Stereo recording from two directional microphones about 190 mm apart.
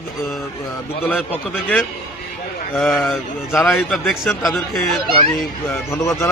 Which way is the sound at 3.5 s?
15° left (ahead or behind).